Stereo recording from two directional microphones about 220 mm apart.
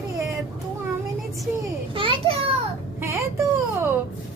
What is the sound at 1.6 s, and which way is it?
Speech, 25° right (ahead or behind).